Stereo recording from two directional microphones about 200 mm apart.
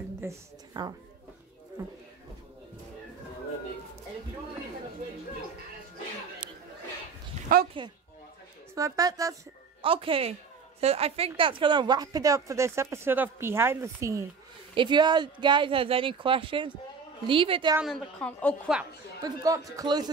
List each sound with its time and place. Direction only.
0.2 s a woman's voice: 15° right (ahead or behind)
7.5 s speech: 45° right (ahead or behind)
8.7 s speech: 15° right (ahead or behind)
9.8 s a woman's voice: 25° right (ahead or behind)
17.7 s a woman's voice: centre (ahead or behind)
19.2 s speech: 15° right (ahead or behind)